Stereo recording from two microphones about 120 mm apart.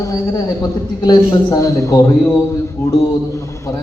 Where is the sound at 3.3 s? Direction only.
25° left (ahead or behind).